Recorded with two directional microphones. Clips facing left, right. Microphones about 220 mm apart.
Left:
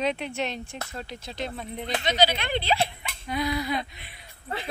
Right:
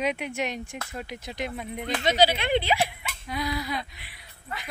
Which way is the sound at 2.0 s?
40° right (ahead or behind).